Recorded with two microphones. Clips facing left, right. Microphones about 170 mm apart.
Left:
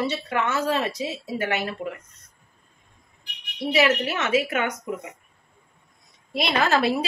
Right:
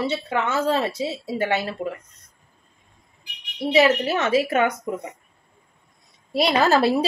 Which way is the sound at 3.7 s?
35° right (ahead or behind).